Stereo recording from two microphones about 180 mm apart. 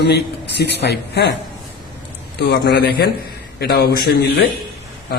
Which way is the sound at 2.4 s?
65° left (ahead or behind).